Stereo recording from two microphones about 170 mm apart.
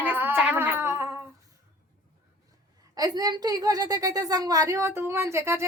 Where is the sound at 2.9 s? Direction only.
20° right (ahead or behind).